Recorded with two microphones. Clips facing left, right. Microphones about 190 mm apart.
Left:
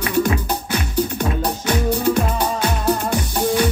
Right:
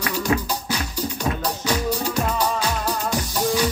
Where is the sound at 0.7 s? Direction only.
55° left (ahead or behind).